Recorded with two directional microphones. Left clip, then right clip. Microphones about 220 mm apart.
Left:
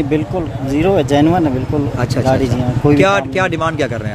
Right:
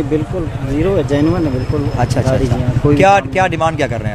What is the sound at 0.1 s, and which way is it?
Speech, 35° left (ahead or behind).